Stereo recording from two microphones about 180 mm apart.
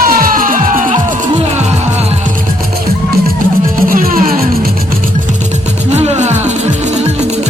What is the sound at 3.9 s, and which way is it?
Music, 50° right (ahead or behind).